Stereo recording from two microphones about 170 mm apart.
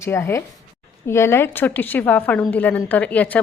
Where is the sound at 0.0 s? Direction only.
15° left (ahead or behind).